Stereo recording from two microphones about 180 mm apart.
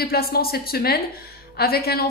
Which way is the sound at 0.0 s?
60° left (ahead or behind).